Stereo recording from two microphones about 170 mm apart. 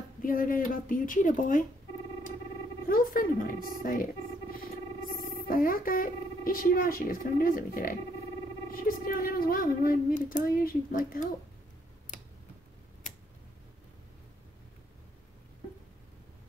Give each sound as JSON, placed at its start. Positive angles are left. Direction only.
{"t": 0.2, "sound": "speech", "side_deg": 55}
{"t": 2.9, "sound": "speech", "side_deg": 55}
{"t": 5.5, "sound": "speech", "side_deg": 55}
{"t": 12.1, "sound": "tick-tock", "side_deg": 45}